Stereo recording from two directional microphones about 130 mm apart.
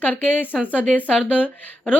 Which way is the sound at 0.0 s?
15° left (ahead or behind).